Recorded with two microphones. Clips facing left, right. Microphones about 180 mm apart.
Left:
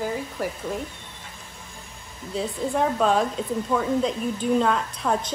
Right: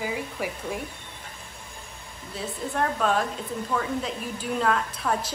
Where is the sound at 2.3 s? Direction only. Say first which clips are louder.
Left 6 dB; centre (ahead or behind).